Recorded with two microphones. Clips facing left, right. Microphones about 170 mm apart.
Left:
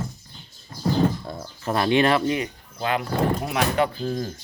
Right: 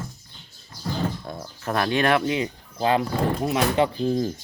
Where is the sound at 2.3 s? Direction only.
25° right (ahead or behind).